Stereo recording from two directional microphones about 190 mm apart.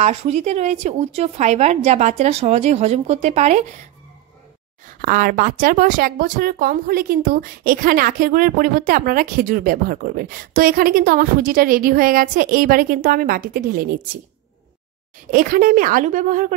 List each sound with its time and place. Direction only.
0.0 s a woman's voice: 35° right (ahead or behind)
5.0 s speech: 45° right (ahead or behind)
15.3 s speech: 45° right (ahead or behind)